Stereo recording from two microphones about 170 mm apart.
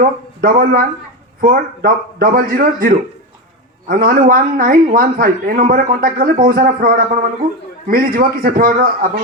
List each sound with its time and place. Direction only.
0.0 s a man's voice: 55° right (ahead or behind)